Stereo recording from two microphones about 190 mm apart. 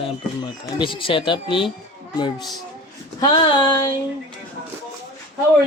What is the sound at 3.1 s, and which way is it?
Speech, 25° left (ahead or behind).